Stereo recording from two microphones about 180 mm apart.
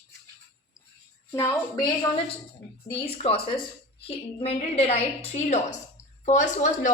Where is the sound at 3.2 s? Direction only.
30° left (ahead or behind).